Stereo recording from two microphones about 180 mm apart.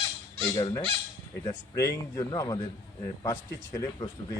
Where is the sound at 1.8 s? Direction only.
15° left (ahead or behind).